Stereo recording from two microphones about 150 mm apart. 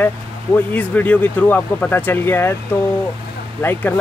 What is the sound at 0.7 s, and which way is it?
Speech, 10° left (ahead or behind).